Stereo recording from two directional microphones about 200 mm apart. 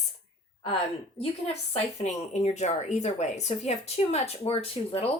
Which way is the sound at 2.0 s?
35° left (ahead or behind).